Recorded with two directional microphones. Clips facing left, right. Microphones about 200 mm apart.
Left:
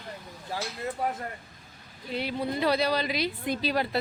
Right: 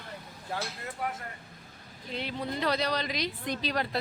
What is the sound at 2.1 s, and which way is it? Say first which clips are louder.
Speech: left 4 dB; 10° left (ahead or behind).